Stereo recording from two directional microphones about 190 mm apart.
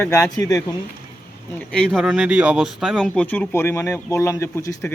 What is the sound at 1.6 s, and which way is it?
Speech, 5° left (ahead or behind).